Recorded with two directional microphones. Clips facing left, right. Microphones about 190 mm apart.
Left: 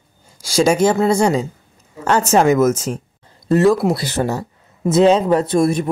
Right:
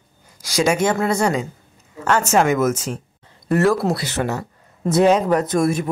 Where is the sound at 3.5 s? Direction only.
20° left (ahead or behind).